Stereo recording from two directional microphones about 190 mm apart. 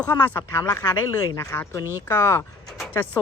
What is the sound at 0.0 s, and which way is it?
Speech, 10° left (ahead or behind).